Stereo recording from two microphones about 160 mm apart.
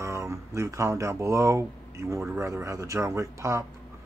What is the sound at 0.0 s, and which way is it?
Speech, 20° right (ahead or behind).